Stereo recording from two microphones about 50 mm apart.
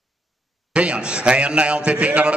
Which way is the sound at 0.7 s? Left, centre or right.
Right.